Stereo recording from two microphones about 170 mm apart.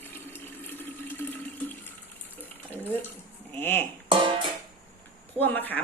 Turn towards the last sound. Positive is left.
turn(degrees=10)  # may be behind; listen again after turning